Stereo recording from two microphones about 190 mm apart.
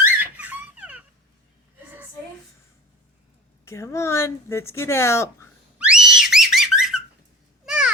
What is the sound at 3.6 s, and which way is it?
Speech, 15° left (ahead or behind).